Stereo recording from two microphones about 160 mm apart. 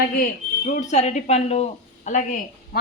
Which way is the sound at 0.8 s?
45° left (ahead or behind).